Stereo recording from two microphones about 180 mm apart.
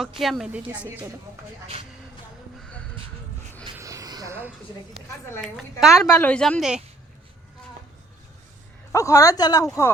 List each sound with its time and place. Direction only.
0.0 s a woman's voice: centre (ahead or behind)
2.6 s a sound: 5° left (ahead or behind)
3.8 s vehicle: 15° right (ahead or behind)
5.4 s a woman's voice: centre (ahead or behind)
8.9 s speech: 15° left (ahead or behind)